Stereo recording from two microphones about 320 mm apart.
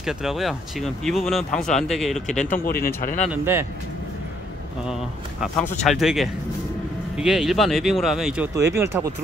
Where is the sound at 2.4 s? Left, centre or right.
Left.